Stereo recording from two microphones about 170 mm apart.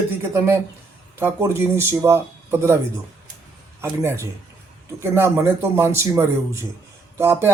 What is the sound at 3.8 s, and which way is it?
Speech, 15° right (ahead or behind).